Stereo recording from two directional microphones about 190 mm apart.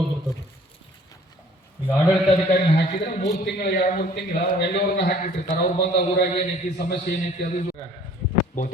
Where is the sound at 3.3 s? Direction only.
55° left (ahead or behind).